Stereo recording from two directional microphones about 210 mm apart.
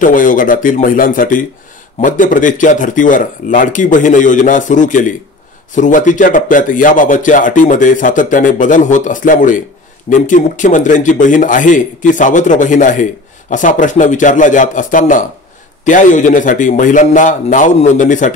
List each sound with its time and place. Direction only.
0.0 s speech: 40° left (ahead or behind)